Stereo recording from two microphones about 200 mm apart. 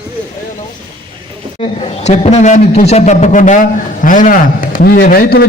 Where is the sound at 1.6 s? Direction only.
30° left (ahead or behind).